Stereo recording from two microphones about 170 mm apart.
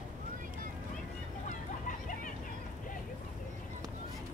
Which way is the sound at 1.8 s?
50° left (ahead or behind).